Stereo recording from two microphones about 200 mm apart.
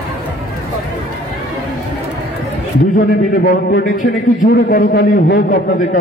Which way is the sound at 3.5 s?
50° left (ahead or behind).